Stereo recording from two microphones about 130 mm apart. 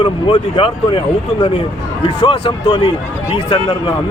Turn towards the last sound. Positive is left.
turn(degrees=40)  # may be behind; listen again after turning